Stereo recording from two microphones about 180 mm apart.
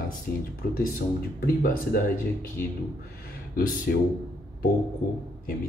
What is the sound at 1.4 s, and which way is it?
Speech, 55° left (ahead or behind).